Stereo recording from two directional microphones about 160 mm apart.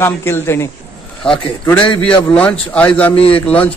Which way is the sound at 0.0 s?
15° left (ahead or behind).